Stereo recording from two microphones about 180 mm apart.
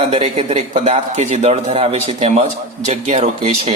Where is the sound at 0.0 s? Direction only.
35° right (ahead or behind).